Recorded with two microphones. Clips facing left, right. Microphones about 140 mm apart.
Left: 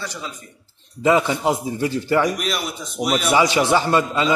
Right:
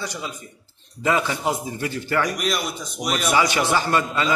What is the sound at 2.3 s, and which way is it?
A man's voice, centre (ahead or behind).